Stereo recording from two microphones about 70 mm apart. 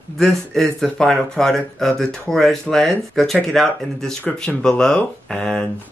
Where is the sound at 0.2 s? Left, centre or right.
Centre.